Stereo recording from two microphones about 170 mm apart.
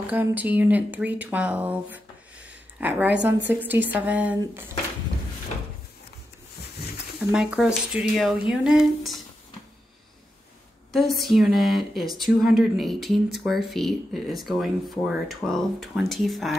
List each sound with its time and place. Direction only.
0.1 s a woman's voice: 10° right (ahead or behind)
7.3 s speech: 5° right (ahead or behind)
10.9 s speech: centre (ahead or behind)